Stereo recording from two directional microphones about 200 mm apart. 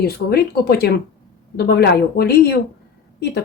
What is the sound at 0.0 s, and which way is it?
Speech, 50° left (ahead or behind).